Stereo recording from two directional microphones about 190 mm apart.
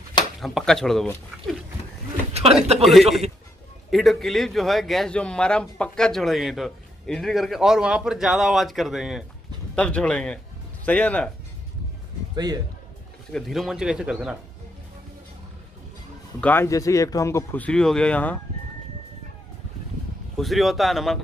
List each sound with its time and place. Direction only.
0.4 s a man's voice: centre (ahead or behind)
2.3 s speech: 35° right (ahead or behind)
2.8 s a man's voice: centre (ahead or behind)
13.3 s a man's voice: centre (ahead or behind)
16.3 s speech: 10° left (ahead or behind)
20.3 s a man's voice: centre (ahead or behind)